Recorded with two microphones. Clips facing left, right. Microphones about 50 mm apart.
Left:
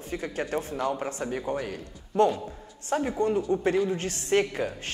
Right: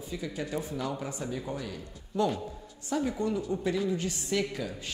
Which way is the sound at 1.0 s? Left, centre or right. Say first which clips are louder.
Left 5 dB; left.